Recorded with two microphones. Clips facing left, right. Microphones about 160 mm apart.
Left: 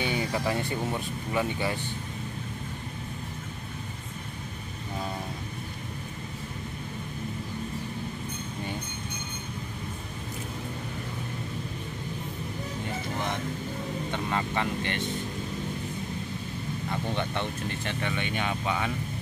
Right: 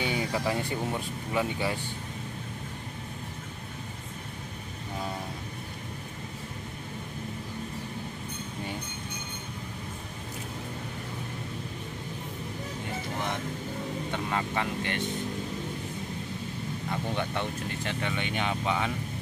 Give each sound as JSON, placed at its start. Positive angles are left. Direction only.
{"t": 0.0, "sound": "a sound", "side_deg": -10}
{"t": 1.3, "sound": "speech", "side_deg": -10}
{"t": 14.1, "sound": "vehicle", "side_deg": -5}
{"t": 16.9, "sound": "speech", "side_deg": -5}